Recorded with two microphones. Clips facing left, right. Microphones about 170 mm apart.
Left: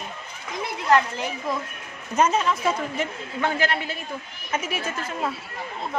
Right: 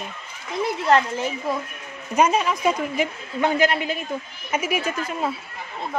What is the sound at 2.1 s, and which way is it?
A woman's voice, 10° right (ahead or behind).